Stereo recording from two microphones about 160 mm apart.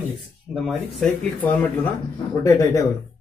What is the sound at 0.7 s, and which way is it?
Speech, centre (ahead or behind).